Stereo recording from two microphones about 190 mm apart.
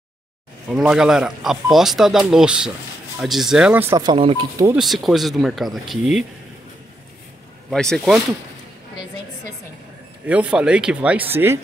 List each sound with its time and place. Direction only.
0.7 s speech: 5° right (ahead or behind)
4.0 s speech: 25° right (ahead or behind)
4.7 s speech: centre (ahead or behind)
7.7 s speech: 5° left (ahead or behind)
10.2 s speech: 5° right (ahead or behind)